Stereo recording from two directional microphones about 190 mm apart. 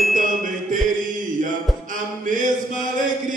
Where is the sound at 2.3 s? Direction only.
45° right (ahead or behind).